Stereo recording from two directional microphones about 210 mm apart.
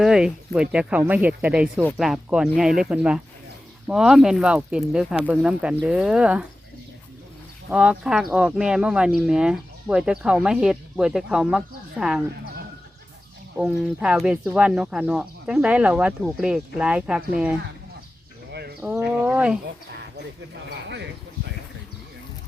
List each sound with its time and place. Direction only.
0.0 s speech: 5° right (ahead or behind)
7.7 s speech: 5° right (ahead or behind)
13.6 s speech: 5° right (ahead or behind)
18.5 s bird: 50° right (ahead or behind)
18.8 s speech: 10° right (ahead or behind)
20.9 s a sound: 55° right (ahead or behind)